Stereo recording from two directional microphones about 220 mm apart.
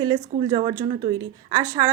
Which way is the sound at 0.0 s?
20° right (ahead or behind).